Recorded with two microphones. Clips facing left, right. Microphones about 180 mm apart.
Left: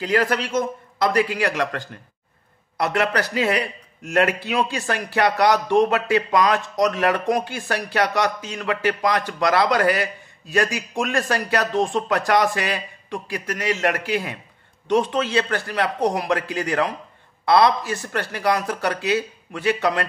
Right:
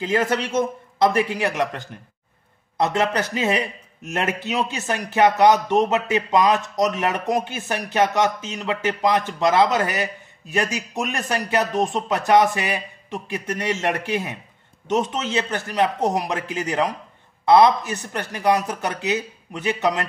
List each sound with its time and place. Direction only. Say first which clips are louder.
0.0 s a man's voice: even; 25° right (ahead or behind)